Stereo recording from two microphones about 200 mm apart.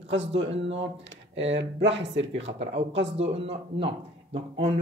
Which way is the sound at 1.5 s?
60° right (ahead or behind).